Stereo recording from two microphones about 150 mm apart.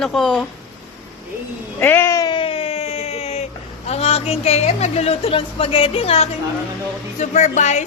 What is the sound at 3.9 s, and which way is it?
A woman's voice, 45° left (ahead or behind).